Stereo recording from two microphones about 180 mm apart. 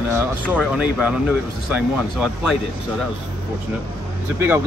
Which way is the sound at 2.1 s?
5° right (ahead or behind).